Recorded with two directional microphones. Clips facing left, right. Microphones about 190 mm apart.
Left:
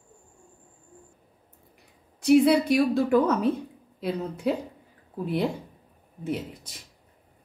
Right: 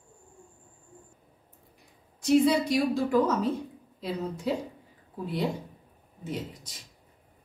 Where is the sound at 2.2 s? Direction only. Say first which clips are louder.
Left 4 dB; 60° left (ahead or behind).